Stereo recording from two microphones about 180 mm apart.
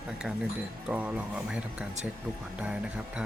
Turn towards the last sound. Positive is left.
turn(degrees=-5)  # may be behind; listen again after turning